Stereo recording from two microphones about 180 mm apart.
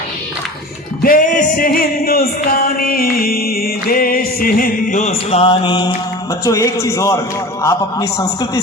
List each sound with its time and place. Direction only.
1.0 s music: 50° left (ahead or behind); by 5.9 s 25° left (ahead or behind)
6.4 s a man's voice: 15° left (ahead or behind)